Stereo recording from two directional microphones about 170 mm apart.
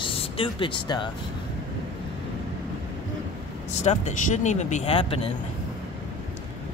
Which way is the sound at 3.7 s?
45° left (ahead or behind).